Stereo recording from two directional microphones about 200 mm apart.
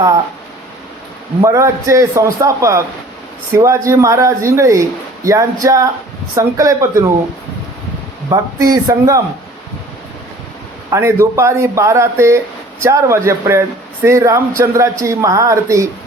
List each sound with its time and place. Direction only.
1.4 s speech: 15° right (ahead or behind)
8.3 s speech: 20° right (ahead or behind)
10.9 s speech: 15° right (ahead or behind)